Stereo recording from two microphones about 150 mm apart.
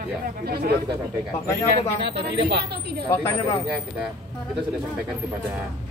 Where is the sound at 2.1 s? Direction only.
90° right.